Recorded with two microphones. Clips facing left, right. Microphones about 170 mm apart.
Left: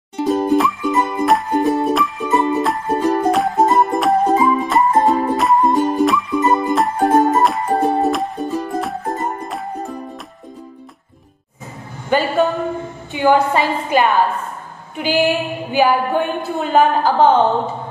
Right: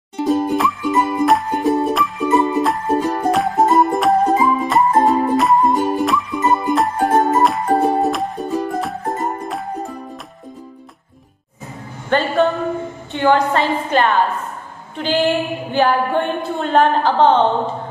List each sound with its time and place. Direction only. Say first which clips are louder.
0.2 s music: left 1 dB; centre (ahead or behind)
12.1 s a sound: even; 5° left (ahead or behind)
13.1 s a woman's voice: left 1 dB; 10° left (ahead or behind)